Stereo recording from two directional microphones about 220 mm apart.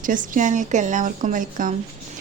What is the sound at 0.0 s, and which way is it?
A woman's voice, 35° right (ahead or behind).